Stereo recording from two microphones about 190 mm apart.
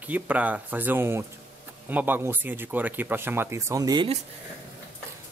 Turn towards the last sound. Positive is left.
turn(degrees=-25)  # may be behind; listen again after turning